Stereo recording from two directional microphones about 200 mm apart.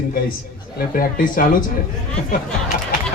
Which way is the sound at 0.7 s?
45° left (ahead or behind).